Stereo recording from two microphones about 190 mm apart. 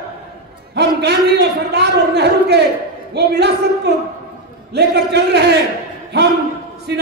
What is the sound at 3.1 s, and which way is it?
A man's voice, 60° right (ahead or behind).